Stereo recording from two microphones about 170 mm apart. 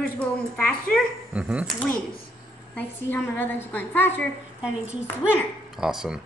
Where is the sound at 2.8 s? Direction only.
10° left (ahead or behind).